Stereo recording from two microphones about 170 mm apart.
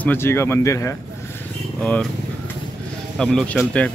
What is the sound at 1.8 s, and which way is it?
Speech, 5° left (ahead or behind).